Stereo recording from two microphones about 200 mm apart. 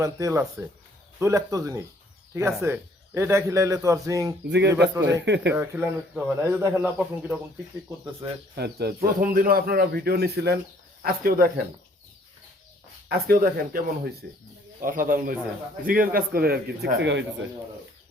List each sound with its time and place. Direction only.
0.0 s speech: 15° right (ahead or behind)
4.4 s speech: 60° right (ahead or behind)
5.5 s speech: 10° right (ahead or behind)
8.5 s speech: 55° right (ahead or behind)
13.1 s speech: 45° right (ahead or behind)